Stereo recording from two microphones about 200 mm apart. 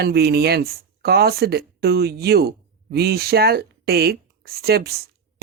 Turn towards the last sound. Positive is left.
turn(degrees=-50)  # may be behind; listen again after turning